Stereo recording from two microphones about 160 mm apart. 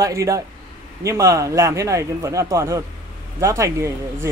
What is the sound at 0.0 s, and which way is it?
A man's voice, 20° right (ahead or behind).